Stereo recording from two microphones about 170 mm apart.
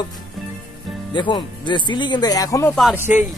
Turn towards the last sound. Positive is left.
turn(degrees=-10)  # may be behind; listen again after turning